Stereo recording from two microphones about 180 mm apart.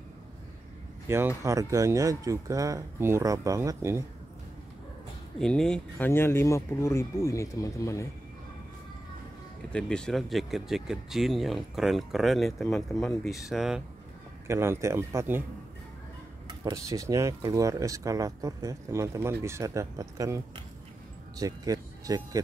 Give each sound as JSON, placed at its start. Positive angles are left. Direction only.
{"t": 1.0, "sound": "speech", "side_deg": -15}
{"t": 5.4, "sound": "speech", "side_deg": 5}
{"t": 9.7, "sound": "speech", "side_deg": 5}
{"t": 14.5, "sound": "speech", "side_deg": -15}
{"t": 16.4, "sound": "speech", "side_deg": -20}